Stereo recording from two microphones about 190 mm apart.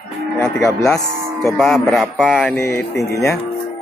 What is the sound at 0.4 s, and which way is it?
Speech, 15° left (ahead or behind).